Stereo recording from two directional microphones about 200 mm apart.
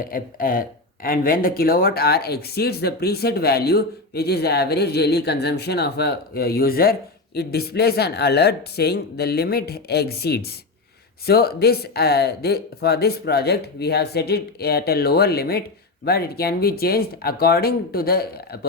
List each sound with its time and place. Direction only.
0.0 s speech: 45° left (ahead or behind)